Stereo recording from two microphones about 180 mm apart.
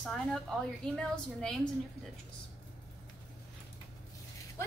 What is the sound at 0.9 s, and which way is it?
Speech, 5° left (ahead or behind).